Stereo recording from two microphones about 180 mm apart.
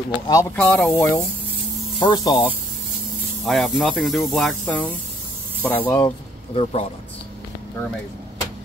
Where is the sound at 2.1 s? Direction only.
20° left (ahead or behind).